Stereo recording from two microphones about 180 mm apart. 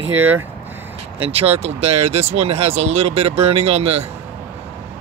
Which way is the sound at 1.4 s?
35° right (ahead or behind).